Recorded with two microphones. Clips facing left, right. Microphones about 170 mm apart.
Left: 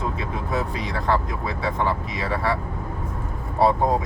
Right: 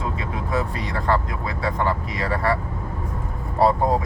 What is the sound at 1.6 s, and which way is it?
Speech, centre (ahead or behind).